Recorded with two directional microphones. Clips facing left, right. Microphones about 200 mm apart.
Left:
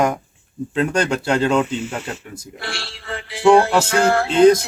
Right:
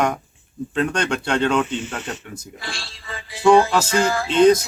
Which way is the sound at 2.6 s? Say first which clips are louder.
Left 4 dB; 65° left (ahead or behind).